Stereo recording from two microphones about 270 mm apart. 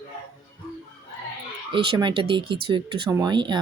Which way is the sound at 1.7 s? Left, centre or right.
Centre.